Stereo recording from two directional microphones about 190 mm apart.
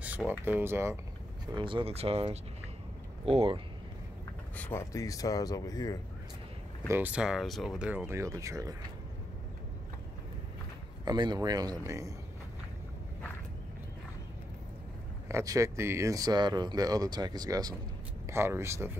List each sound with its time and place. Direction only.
0.0 s speech: 10° right (ahead or behind)
1.5 s speech: 25° right (ahead or behind)
4.6 s speech: 10° left (ahead or behind)
6.9 s speech: 10° right (ahead or behind)
11.1 s speech: 20° right (ahead or behind)
15.2 s speech: 15° right (ahead or behind)